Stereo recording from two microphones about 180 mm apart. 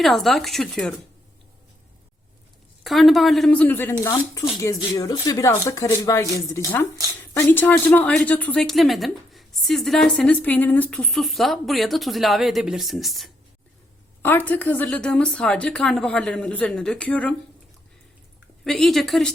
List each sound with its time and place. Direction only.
0.0 s speech: centre (ahead or behind)
2.8 s speech: centre (ahead or behind)
18.6 s speech: centre (ahead or behind)